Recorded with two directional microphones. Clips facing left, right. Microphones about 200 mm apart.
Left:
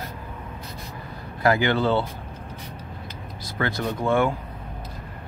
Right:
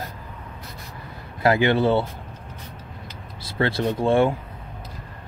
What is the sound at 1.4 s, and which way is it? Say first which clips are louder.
Speech: right 2 dB; 25° right (ahead or behind).